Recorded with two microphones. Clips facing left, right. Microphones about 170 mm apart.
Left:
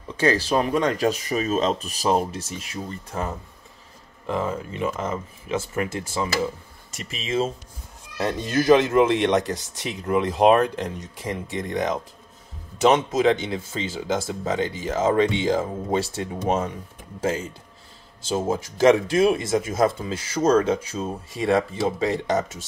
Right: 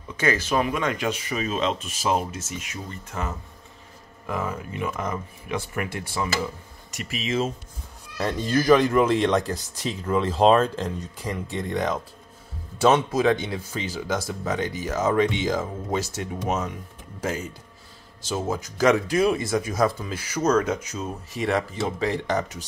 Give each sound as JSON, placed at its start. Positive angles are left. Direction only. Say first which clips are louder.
{"t": 0.2, "sound": "speech", "louder": "left 2 dB", "side_deg": 35}
{"t": 18.5, "sound": "speech", "louder": "left 3 dB", "side_deg": 25}